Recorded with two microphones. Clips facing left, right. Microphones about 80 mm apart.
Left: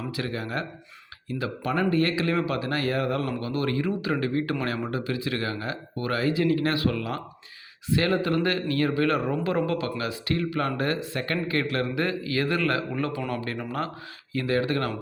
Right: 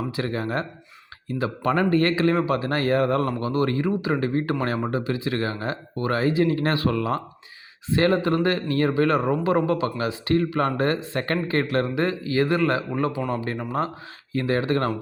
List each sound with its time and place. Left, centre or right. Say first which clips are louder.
0.1 s a man's voice: right 4 dB; right